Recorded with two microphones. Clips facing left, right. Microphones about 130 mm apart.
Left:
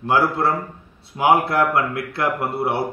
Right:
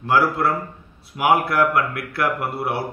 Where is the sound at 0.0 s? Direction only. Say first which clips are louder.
Even; 20° left (ahead or behind).